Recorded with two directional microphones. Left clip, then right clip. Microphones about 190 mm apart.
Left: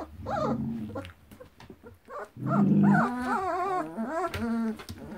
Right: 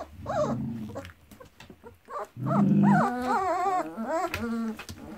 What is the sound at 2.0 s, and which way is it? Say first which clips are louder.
Dog: right 2 dB; 30° right (ahead or behind).